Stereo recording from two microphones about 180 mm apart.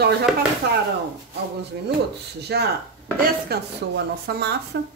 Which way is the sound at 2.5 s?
65° right (ahead or behind).